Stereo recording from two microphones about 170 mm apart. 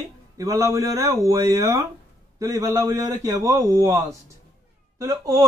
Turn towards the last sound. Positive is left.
turn(degrees=-20)  # may be behind; listen again after turning